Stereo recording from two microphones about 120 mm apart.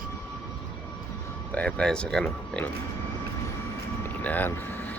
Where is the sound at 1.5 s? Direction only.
10° left (ahead or behind).